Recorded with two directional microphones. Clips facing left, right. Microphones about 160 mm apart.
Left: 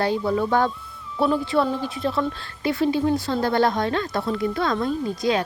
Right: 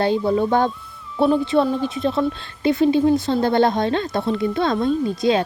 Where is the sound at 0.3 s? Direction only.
25° right (ahead or behind).